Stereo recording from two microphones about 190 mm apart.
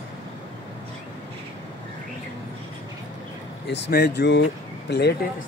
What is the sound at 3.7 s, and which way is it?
Speech, 65° left (ahead or behind).